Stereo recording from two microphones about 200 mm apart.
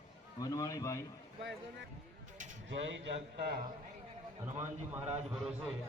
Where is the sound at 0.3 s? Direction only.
15° left (ahead or behind).